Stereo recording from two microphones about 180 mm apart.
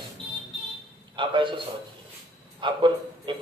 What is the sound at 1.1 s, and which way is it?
A man's voice, 25° right (ahead or behind).